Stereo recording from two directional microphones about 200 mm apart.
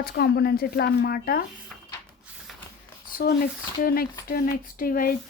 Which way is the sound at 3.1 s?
45° left (ahead or behind).